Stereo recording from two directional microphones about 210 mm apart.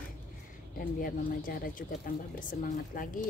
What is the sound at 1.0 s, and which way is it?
Speech, 40° left (ahead or behind).